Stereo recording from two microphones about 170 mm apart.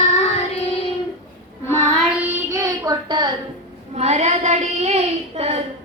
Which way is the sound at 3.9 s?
40° right (ahead or behind).